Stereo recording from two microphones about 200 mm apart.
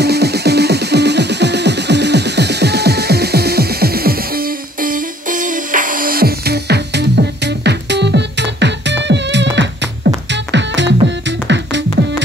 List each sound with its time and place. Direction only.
0.0 s music: 55° right (ahead or behind)